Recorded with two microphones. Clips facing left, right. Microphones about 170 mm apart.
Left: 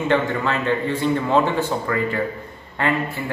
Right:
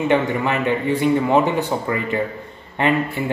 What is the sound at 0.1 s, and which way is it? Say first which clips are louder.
A man's voice: even; 15° right (ahead or behind).